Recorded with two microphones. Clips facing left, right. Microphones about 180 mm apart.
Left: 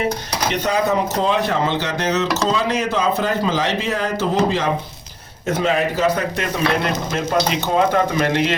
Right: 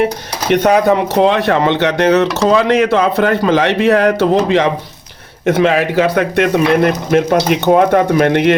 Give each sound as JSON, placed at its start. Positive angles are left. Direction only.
{"t": 0.5, "sound": "speech", "side_deg": -75}